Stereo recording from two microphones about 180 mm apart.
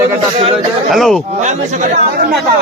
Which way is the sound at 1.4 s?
50° right (ahead or behind).